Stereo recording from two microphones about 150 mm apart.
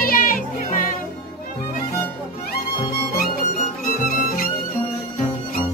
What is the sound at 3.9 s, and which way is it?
Music, 65° left (ahead or behind).